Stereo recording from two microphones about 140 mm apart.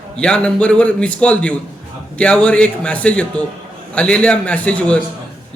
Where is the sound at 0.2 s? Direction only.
5° left (ahead or behind).